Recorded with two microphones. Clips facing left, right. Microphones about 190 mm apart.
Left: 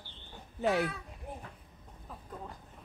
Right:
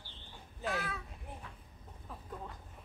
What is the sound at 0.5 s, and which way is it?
Speech, 70° left (ahead or behind).